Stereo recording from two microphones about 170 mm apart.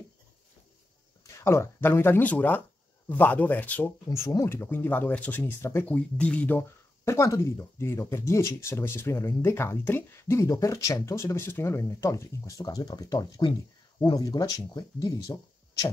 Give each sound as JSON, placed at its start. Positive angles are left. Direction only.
{"t": 1.2, "sound": "speech", "side_deg": 15}